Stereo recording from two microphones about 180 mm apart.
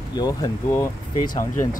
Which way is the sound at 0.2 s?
20° left (ahead or behind).